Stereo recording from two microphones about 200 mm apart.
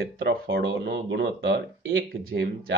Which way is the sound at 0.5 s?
55° right (ahead or behind).